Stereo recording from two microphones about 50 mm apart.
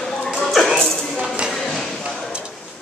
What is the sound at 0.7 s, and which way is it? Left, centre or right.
Music, centre.